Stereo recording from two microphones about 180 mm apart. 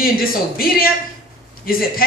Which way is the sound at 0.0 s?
55° left (ahead or behind).